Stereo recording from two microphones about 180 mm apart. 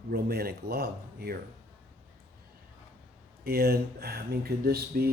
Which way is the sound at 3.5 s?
60° right (ahead or behind).